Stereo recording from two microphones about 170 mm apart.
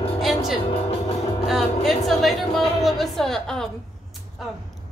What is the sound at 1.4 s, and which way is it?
Speech, centre (ahead or behind).